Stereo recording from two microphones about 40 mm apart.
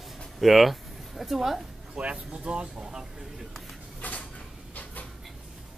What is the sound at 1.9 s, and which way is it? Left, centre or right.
Speech, right.